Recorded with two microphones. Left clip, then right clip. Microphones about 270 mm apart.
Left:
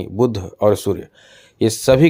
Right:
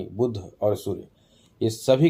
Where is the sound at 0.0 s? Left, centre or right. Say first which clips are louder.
Left 8 dB; left.